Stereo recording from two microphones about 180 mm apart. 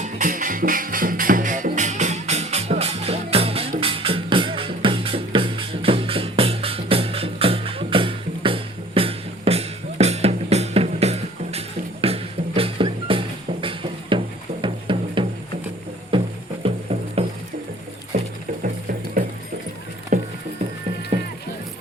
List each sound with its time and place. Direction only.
0.0 s music: 50° right (ahead or behind)
18.1 s music: 45° right (ahead or behind)
20.1 s music: 50° right (ahead or behind)